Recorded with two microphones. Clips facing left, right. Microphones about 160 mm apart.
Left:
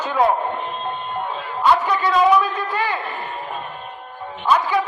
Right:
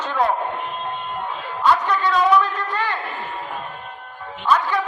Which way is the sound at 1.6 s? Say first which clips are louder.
Left 1 dB; 5° left (ahead or behind).